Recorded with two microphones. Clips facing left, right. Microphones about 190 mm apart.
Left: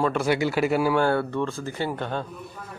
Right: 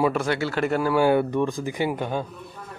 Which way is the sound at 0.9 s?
15° right (ahead or behind).